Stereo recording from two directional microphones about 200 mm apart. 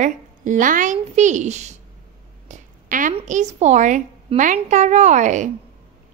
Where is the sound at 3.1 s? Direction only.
35° right (ahead or behind).